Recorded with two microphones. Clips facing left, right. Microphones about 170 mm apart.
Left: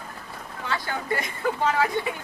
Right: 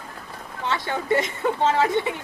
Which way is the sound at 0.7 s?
25° right (ahead or behind).